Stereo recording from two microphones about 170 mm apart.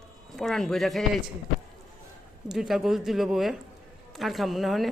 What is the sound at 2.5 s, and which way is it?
Speech, centre (ahead or behind).